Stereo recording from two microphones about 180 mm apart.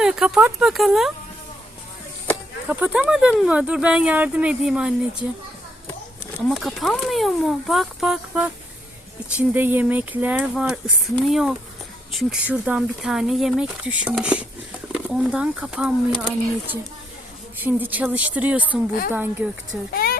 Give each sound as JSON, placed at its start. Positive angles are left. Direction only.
{"t": 0.0, "sound": "a sound", "side_deg": -5}
{"t": 0.6, "sound": "speech", "side_deg": 0}
{"t": 2.6, "sound": "speech", "side_deg": -10}
{"t": 6.5, "sound": "speech", "side_deg": 0}
{"t": 9.5, "sound": "speech", "side_deg": -10}
{"t": 19.9, "sound": "speech", "side_deg": 55}